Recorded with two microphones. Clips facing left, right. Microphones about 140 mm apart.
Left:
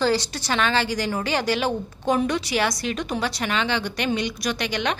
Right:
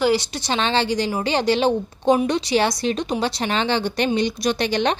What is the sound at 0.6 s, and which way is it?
A woman's voice, 25° right (ahead or behind).